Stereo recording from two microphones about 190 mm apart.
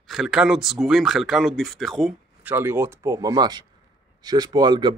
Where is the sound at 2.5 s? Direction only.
10° right (ahead or behind).